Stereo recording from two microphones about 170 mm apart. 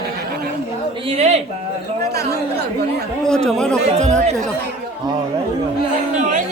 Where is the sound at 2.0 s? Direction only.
70° right (ahead or behind).